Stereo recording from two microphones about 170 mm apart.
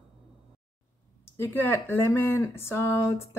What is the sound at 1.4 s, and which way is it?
Speech, 15° left (ahead or behind).